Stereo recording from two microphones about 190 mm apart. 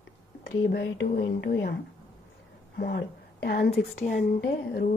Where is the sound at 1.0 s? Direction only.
55° left (ahead or behind).